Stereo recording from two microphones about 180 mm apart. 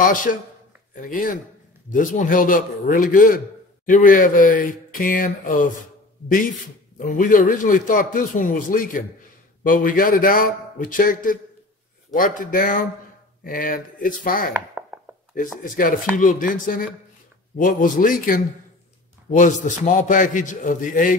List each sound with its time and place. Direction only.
0.0 s a man's voice: 50° left (ahead or behind)
14.5 s chopping: 10° right (ahead or behind)
15.3 s a man's voice: 50° left (ahead or behind)